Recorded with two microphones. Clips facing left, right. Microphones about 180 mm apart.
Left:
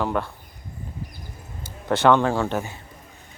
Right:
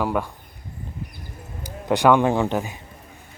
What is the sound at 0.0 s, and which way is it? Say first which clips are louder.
Speech: right 1 dB; 10° right (ahead or behind).